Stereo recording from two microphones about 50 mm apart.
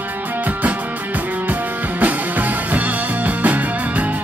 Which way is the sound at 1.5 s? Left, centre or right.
Right.